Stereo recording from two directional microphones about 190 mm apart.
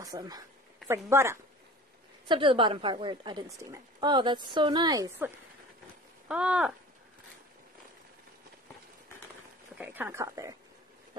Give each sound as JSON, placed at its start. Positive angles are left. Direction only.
{"t": 0.0, "sound": "a woman's voice", "side_deg": -20}
{"t": 2.2, "sound": "a woman's voice", "side_deg": -25}
{"t": 6.2, "sound": "a sound", "side_deg": -5}
{"t": 9.8, "sound": "speech", "side_deg": -10}